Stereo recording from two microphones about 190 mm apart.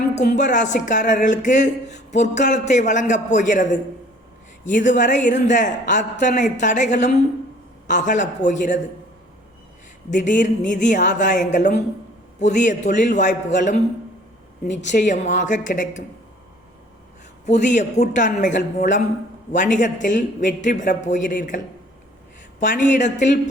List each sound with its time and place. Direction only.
0.1 s speech: 40° left (ahead or behind)
10.1 s a woman's voice: 40° left (ahead or behind)
17.4 s speech: 40° left (ahead or behind)
23.0 s speech: 40° left (ahead or behind)